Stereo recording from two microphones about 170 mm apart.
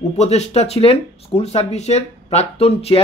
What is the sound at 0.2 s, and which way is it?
Speech, 40° left (ahead or behind).